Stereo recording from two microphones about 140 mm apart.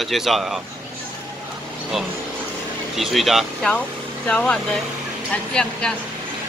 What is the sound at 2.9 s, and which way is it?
Speech, centre (ahead or behind).